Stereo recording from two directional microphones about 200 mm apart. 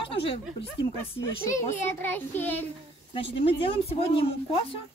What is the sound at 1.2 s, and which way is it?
A child's voice, 15° left (ahead or behind).